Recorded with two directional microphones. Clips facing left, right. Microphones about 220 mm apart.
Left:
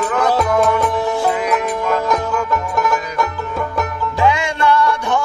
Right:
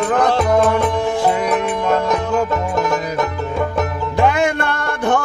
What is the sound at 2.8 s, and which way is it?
Music, 20° right (ahead or behind).